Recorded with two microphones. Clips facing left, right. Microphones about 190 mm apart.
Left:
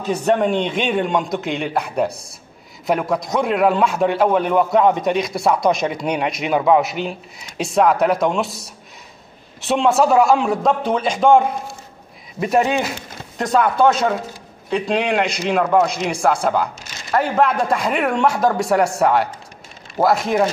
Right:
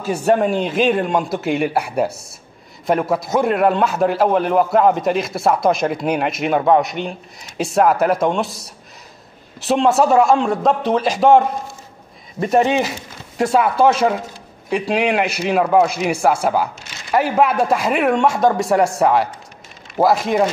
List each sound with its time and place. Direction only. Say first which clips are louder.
0.0 s a man's voice: right 1 dB; 5° right (ahead or behind)